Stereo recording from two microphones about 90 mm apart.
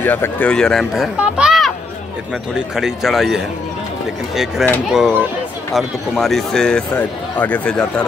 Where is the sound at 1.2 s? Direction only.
10° right (ahead or behind).